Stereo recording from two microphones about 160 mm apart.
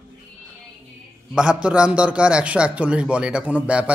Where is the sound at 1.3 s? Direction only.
5° right (ahead or behind).